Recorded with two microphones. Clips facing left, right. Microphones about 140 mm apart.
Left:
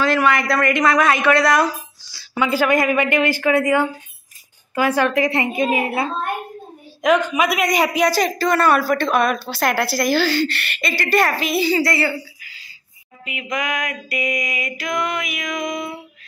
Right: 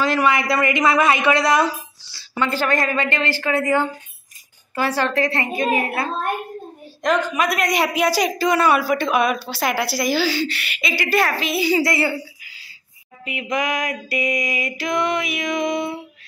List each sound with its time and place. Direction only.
0.1 s a woman's voice: 5° right (ahead or behind)
2.3 s a woman's voice: 10° left (ahead or behind)
7.0 s a woman's voice: 5° left (ahead or behind)
11.6 s a woman's voice: 15° right (ahead or behind)
13.3 s a sound: 30° right (ahead or behind)